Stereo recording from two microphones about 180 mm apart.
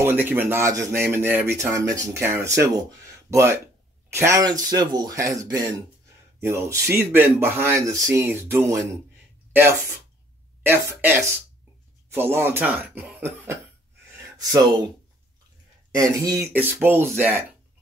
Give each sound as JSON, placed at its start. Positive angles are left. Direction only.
{"t": 0.0, "sound": "speech", "side_deg": -10}
{"t": 14.1, "sound": "a sound", "side_deg": -15}
{"t": 15.9, "sound": "speech", "side_deg": -20}